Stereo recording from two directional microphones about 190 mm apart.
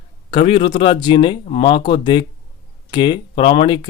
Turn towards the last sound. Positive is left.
turn(degrees=25)  # may be behind; listen again after turning